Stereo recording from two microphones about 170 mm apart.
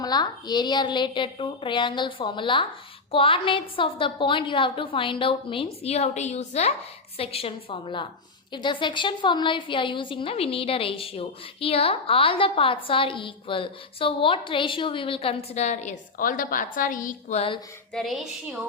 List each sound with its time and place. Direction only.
0.0 s a woman's voice: 25° left (ahead or behind)
17.9 s a woman's voice: centre (ahead or behind)